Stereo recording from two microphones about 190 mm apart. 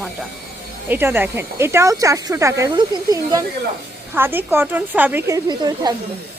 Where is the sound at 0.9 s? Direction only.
10° right (ahead or behind).